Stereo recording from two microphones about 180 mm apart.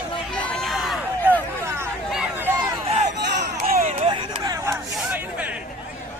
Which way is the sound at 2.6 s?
35° right (ahead or behind).